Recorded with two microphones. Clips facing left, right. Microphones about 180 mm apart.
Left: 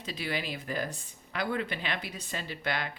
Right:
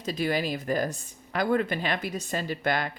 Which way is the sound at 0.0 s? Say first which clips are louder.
Right 8 dB; 45° right (ahead or behind).